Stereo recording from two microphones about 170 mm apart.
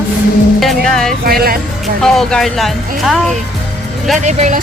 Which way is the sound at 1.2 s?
60° right (ahead or behind).